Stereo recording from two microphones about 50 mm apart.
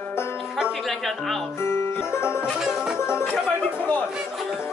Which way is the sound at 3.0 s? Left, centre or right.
Left.